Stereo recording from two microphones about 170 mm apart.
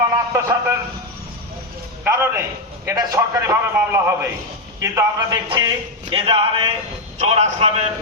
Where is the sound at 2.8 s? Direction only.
20° right (ahead or behind).